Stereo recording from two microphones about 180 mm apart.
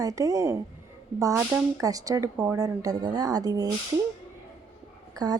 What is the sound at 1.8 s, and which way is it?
A woman's voice, 20° right (ahead or behind).